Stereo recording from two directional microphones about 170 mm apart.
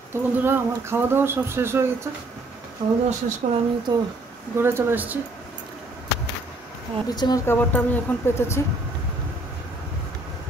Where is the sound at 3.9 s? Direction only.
25° right (ahead or behind).